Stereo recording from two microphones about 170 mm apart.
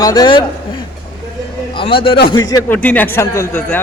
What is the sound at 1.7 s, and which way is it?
Speech, 30° left (ahead or behind).